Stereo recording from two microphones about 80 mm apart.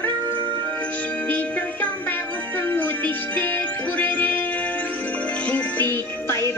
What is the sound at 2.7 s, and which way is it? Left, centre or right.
Music, left.